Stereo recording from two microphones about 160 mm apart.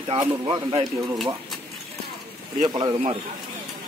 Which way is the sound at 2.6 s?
25° right (ahead or behind).